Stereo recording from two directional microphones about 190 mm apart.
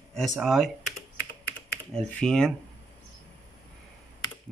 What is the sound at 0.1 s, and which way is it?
Speech, centre (ahead or behind).